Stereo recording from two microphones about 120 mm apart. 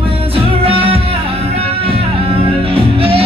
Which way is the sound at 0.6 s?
50° right (ahead or behind).